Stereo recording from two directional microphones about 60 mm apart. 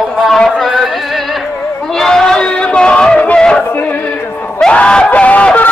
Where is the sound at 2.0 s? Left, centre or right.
Centre.